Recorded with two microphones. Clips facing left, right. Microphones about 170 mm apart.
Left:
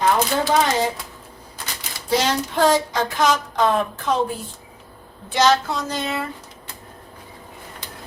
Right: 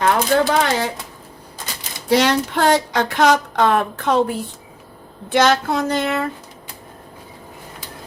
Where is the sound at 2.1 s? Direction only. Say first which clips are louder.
Right 4 dB; 65° right (ahead or behind).